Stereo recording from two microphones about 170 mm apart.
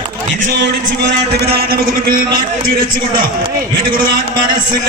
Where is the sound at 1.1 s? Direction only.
65° right (ahead or behind).